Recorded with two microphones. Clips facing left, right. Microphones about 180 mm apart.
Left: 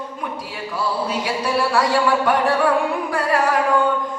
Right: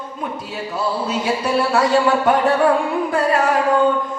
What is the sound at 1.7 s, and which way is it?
Speech, 25° right (ahead or behind).